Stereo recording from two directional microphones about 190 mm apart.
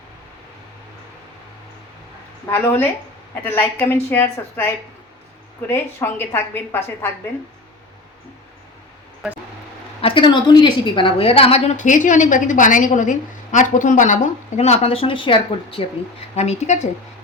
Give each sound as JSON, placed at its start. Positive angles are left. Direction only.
{"t": 2.5, "sound": "a woman's voice", "side_deg": 10}
{"t": 10.0, "sound": "a woman's voice", "side_deg": 25}